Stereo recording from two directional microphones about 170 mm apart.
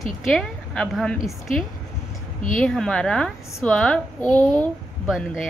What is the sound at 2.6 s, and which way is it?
A woman's voice, 5° left (ahead or behind).